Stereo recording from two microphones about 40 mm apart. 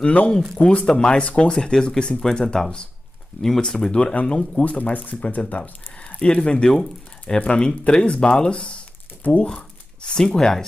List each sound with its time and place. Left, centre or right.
0.0 s speech: left
0.7 s speech: left
3.9 s speech: left
4.3 s speech: centre
4.6 s speech: left
9.2 s speech: left
10.1 s speech: centre